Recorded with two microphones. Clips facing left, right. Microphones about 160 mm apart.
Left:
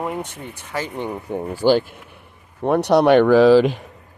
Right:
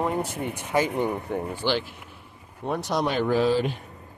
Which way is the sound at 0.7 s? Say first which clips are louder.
Right 3 dB; 15° right (ahead or behind).